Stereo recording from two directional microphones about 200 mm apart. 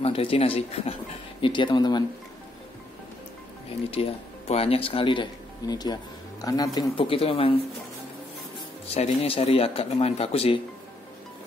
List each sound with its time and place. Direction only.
0.0 s speech: 30° left (ahead or behind)
3.9 s speech: 30° left (ahead or behind)
8.8 s speech: 30° left (ahead or behind)